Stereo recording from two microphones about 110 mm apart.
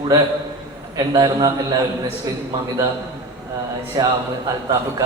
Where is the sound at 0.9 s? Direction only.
35° right (ahead or behind).